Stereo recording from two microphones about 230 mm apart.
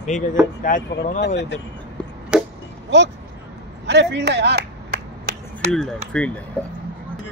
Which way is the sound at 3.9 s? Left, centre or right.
Right.